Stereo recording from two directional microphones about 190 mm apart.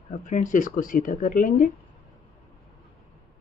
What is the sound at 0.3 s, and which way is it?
Speech, 40° left (ahead or behind).